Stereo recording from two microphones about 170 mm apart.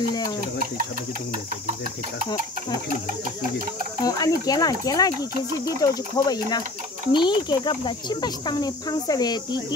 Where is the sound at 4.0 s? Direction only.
20° left (ahead or behind).